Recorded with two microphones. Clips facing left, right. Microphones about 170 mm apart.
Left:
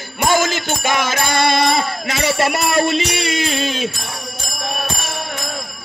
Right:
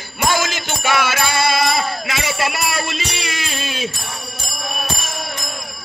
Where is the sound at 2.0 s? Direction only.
45° left (ahead or behind).